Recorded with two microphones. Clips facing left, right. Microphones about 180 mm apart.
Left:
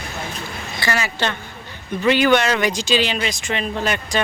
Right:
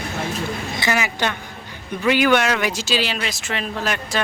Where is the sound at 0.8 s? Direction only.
15° right (ahead or behind).